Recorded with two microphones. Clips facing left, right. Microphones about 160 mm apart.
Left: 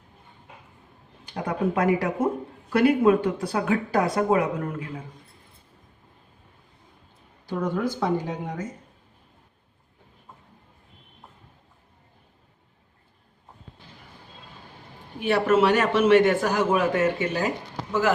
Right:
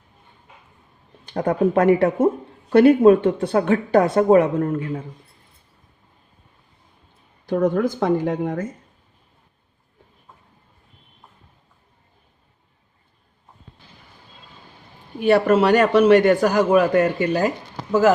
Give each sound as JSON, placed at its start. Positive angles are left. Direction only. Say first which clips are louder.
{"t": 1.3, "sound": "speech", "louder": "right 7 dB", "side_deg": -45}
{"t": 1.8, "sound": "speech", "louder": "right 7 dB", "side_deg": -30}
{"t": 4.2, "sound": "a man's voice", "louder": "right 8 dB", "side_deg": -40}
{"t": 7.4, "sound": "speech", "louder": "right 7 dB", "side_deg": -50}
{"t": 15.2, "sound": "a man's voice", "louder": "right 4 dB", "side_deg": -40}
{"t": 16.9, "sound": "speech", "louder": "right 5 dB", "side_deg": -60}